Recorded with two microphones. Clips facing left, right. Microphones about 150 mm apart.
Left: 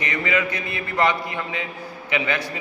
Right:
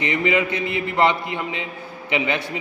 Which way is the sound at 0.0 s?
25° right (ahead or behind).